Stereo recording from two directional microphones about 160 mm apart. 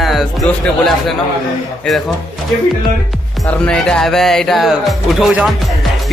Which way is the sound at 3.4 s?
5° left (ahead or behind).